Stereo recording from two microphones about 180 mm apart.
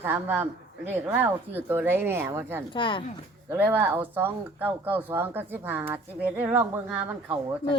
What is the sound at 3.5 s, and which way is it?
Speech, 10° right (ahead or behind).